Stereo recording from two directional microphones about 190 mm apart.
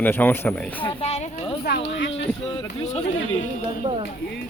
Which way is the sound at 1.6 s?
60° left (ahead or behind).